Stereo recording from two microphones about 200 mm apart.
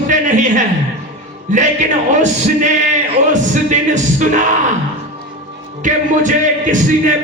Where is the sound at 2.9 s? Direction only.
35° right (ahead or behind).